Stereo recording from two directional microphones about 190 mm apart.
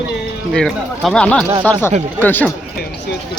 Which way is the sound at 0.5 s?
5° left (ahead or behind).